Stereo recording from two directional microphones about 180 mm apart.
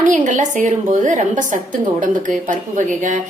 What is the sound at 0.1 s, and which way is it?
A woman's voice, 45° right (ahead or behind).